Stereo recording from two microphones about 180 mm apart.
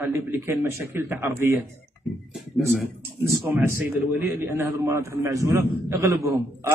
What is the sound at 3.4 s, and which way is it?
A man's voice, 10° right (ahead or behind).